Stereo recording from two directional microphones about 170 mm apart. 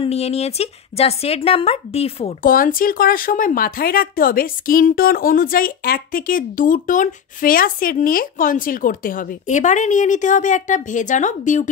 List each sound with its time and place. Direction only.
0.0 s speech: 35° left (ahead or behind)
2.4 s speech: 55° left (ahead or behind)